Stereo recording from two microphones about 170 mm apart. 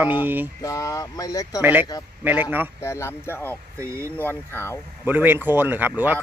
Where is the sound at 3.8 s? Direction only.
15° right (ahead or behind).